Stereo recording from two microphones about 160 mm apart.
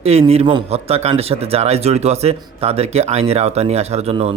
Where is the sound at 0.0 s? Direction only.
40° right (ahead or behind).